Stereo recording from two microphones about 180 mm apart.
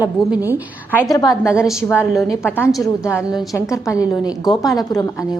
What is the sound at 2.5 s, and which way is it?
A woman's voice, 10° left (ahead or behind).